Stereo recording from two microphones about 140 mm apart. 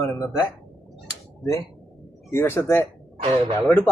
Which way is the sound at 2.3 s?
20° left (ahead or behind).